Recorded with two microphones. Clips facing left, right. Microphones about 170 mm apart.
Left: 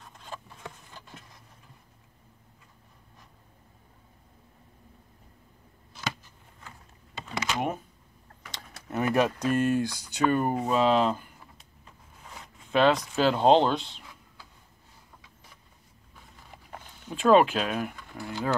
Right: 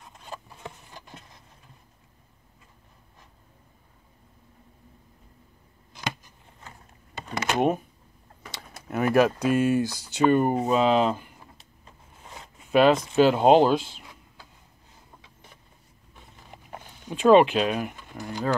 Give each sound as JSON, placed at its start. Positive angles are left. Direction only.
{"t": 0.0, "sound": "a sound", "side_deg": -20}
{"t": 7.2, "sound": "a sound", "side_deg": -55}
{"t": 8.5, "sound": "speech", "side_deg": -5}
{"t": 12.7, "sound": "speech", "side_deg": -10}
{"t": 17.1, "sound": "speech", "side_deg": 0}
{"t": 17.9, "sound": "speech", "side_deg": -20}